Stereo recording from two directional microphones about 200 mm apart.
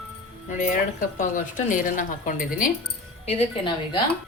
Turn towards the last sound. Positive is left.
turn(degrees=25)  # may be behind; listen again after turning